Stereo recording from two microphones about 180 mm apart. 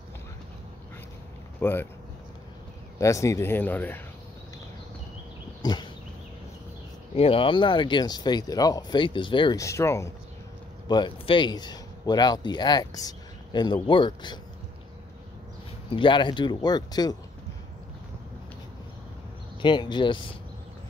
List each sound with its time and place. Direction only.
1.6 s speech: 10° left (ahead or behind)
3.0 s speech: 15° left (ahead or behind)
5.6 s a sound: 25° left (ahead or behind)
7.2 s a man's voice: 30° left (ahead or behind)
15.9 s speech: 25° left (ahead or behind)
19.6 s speech: 25° left (ahead or behind)